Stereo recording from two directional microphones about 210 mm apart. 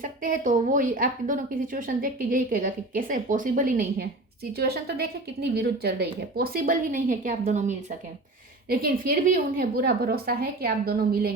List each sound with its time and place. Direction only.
0.0 s a woman's voice: 40° right (ahead or behind)